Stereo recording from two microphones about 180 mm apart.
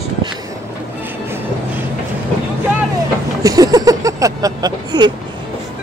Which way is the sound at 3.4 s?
20° right (ahead or behind).